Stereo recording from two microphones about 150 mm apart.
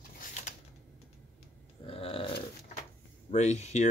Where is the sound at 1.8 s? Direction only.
40° left (ahead or behind).